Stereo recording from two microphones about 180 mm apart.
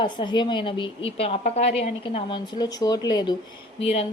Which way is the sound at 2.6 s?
20° left (ahead or behind).